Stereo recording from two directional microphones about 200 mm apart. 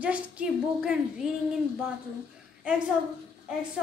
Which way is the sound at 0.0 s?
5° right (ahead or behind).